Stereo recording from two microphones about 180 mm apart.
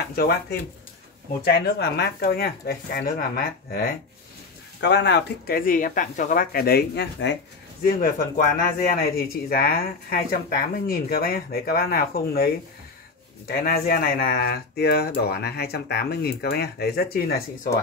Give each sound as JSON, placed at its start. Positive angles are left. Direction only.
{"t": 0.1, "sound": "speech", "side_deg": 60}
{"t": 4.7, "sound": "speech", "side_deg": 75}
{"t": 7.8, "sound": "speech", "side_deg": 50}